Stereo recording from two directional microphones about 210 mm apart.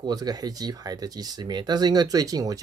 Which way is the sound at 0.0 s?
20° right (ahead or behind).